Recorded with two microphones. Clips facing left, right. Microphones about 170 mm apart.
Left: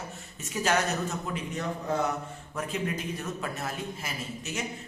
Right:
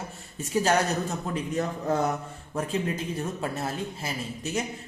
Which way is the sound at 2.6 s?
30° right (ahead or behind).